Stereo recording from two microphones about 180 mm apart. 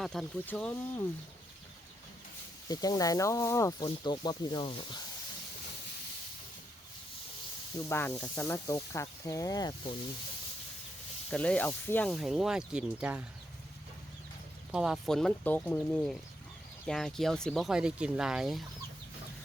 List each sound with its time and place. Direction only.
0.0 s speech: centre (ahead or behind)
2.6 s speech: 20° left (ahead or behind)
7.9 s speech: 15° left (ahead or behind)
11.3 s speech: 5° left (ahead or behind)
14.7 s speech: 5° right (ahead or behind)